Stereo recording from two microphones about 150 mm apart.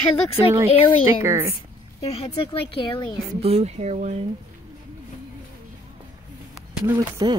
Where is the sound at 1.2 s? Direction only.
15° right (ahead or behind).